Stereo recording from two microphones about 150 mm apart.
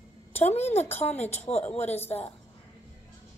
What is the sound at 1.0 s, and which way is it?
Speech, 45° left (ahead or behind).